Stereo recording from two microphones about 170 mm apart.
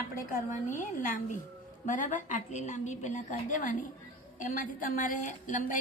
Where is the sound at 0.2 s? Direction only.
50° left (ahead or behind).